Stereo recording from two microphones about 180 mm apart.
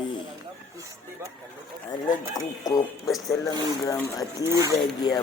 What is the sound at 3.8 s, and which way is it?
Speech, 15° left (ahead or behind).